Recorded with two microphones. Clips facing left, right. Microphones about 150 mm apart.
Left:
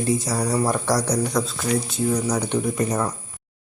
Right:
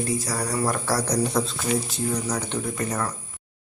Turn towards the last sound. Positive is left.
turn(degrees=20)  # may be behind; listen again after turning